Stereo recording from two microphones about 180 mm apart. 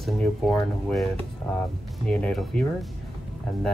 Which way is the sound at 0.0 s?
Centre (ahead or behind).